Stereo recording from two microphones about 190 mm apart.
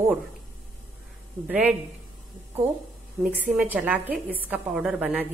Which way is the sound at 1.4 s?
10° right (ahead or behind).